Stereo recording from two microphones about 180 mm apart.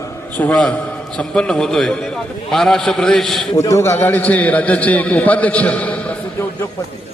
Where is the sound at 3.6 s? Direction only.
15° left (ahead or behind).